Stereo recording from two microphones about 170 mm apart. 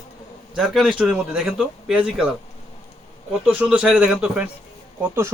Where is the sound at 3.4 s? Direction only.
5° right (ahead or behind).